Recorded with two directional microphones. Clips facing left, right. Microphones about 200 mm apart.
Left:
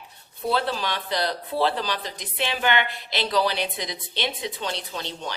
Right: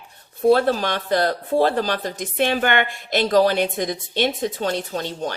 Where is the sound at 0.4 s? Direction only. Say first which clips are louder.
Right 9 dB; 50° right (ahead or behind).